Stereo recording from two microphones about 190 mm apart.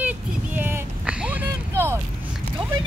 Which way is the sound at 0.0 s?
10° right (ahead or behind).